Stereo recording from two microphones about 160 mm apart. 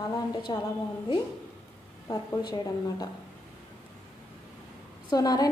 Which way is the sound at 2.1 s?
25° left (ahead or behind).